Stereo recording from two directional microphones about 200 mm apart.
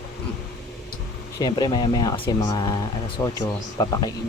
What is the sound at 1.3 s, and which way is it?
Speech, 20° left (ahead or behind).